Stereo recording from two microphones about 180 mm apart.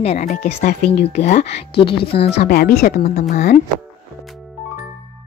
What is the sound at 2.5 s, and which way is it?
Speech, 60° left (ahead or behind).